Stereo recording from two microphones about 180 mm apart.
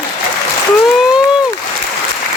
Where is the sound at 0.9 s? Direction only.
5° right (ahead or behind).